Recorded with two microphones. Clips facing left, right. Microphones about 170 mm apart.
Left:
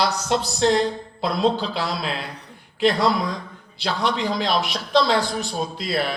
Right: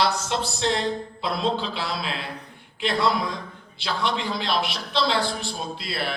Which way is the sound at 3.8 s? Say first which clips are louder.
Left 3 dB; 40° left (ahead or behind).